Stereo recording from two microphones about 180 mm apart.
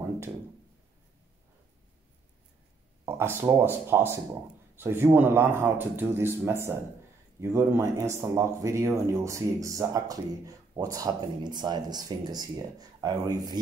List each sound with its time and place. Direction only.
3.1 s speech: 15° right (ahead or behind)